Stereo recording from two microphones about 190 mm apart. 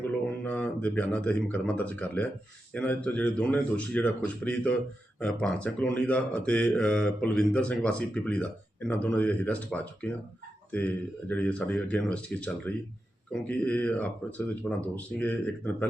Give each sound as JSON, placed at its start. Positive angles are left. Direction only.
{"t": 0.4, "sound": "speech", "side_deg": 5}